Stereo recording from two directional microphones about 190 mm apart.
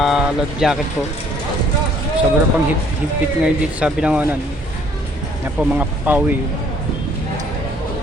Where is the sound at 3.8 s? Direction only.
5° right (ahead or behind).